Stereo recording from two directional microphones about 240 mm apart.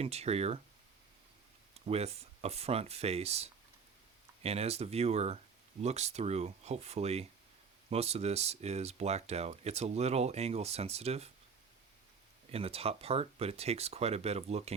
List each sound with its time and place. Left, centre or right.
0.0 s speech: right
1.9 s speech: right
12.5 s speech: right